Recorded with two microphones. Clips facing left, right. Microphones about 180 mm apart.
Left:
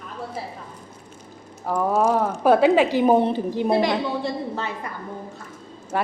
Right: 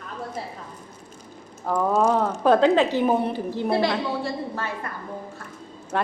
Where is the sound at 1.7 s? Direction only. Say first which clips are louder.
Even; 10° left (ahead or behind).